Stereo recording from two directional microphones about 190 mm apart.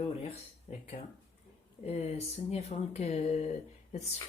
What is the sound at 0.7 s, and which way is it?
Speech, 40° left (ahead or behind).